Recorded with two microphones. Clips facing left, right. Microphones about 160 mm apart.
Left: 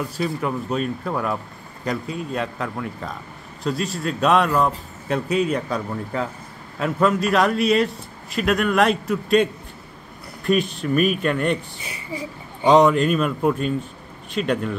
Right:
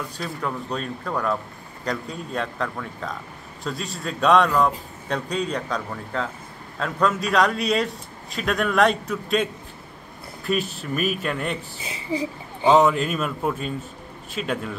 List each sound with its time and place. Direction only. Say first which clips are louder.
0.2 s a man's voice: left 5 dB; 5° left (ahead or behind)
11.8 s speech: right 4 dB; 25° right (ahead or behind)
12.6 s a man's voice: left 3 dB; 5° right (ahead or behind)